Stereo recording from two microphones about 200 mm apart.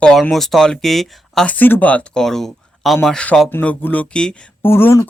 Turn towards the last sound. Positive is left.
turn(degrees=10)  # may be behind; listen again after turning